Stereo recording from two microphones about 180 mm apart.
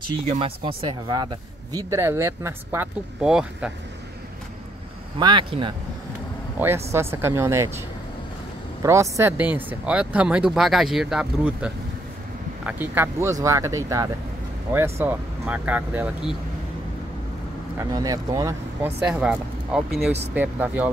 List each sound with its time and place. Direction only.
0.3 s speech: 30° right (ahead or behind); by 3.7 s 5° right (ahead or behind)
5.2 s speech: 25° right (ahead or behind)
6.6 s speech: 15° right (ahead or behind)
8.8 s speech: 15° right (ahead or behind)
17.7 s speech: 20° right (ahead or behind)
19.0 s speech: 5° right (ahead or behind)